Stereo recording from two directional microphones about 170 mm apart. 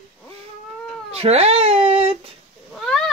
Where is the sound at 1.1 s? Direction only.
35° right (ahead or behind).